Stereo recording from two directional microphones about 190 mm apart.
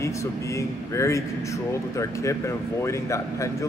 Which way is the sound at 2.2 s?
15° left (ahead or behind).